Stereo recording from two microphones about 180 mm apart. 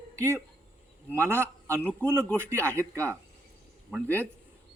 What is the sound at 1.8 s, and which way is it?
Speech, 5° left (ahead or behind).